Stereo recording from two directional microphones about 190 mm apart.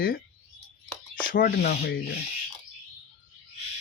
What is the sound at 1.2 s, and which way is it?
Speech, 50° left (ahead or behind).